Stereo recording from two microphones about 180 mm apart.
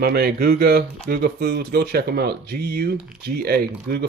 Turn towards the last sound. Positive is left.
turn(degrees=-60)  # may be behind; listen again after turning